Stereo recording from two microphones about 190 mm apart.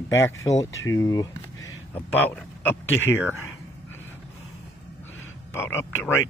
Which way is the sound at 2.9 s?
75° left (ahead or behind).